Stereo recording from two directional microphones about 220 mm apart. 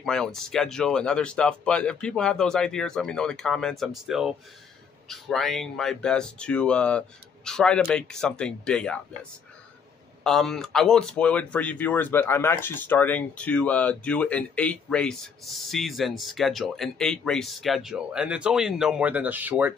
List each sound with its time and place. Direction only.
0.0 s speech: centre (ahead or behind)
10.2 s speech: centre (ahead or behind)